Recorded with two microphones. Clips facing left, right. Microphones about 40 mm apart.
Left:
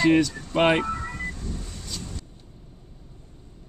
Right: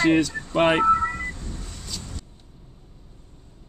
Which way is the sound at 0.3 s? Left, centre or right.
Right.